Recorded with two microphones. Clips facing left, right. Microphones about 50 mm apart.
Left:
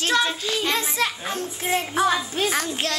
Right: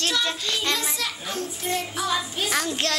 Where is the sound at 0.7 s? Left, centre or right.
Left.